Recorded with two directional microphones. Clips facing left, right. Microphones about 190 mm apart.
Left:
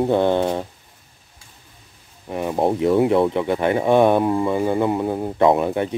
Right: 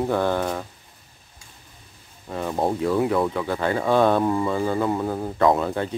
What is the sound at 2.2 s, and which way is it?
Speech, 15° left (ahead or behind).